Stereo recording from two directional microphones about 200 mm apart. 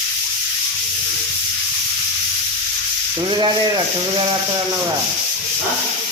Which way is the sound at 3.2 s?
25° right (ahead or behind).